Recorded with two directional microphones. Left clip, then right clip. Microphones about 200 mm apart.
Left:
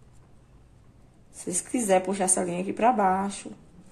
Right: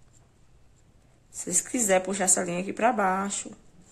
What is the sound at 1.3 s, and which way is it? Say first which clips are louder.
Speech: right 1 dB; 15° right (ahead or behind).